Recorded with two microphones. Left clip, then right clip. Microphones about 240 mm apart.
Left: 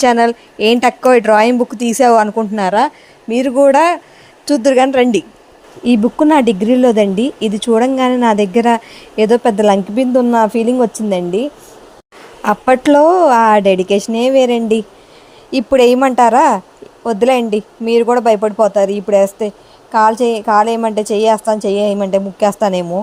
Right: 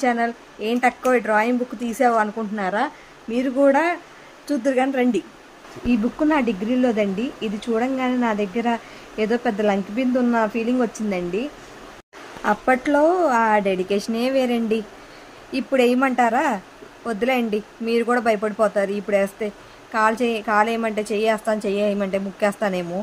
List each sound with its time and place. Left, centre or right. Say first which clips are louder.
0.0 s a woman's voice: left 11 dB; left